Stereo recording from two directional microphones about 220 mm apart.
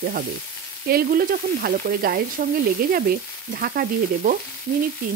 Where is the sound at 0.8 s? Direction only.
40° right (ahead or behind).